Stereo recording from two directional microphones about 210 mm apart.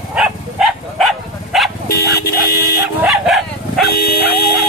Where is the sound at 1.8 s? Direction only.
50° left (ahead or behind).